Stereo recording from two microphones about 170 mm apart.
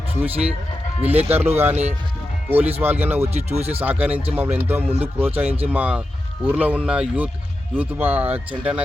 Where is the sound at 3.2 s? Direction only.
40° right (ahead or behind).